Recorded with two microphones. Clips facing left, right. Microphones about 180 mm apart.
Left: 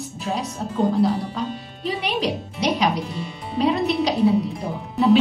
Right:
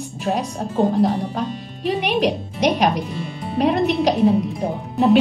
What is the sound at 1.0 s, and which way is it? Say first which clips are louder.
Speech: right 2 dB; 70° right (ahead or behind).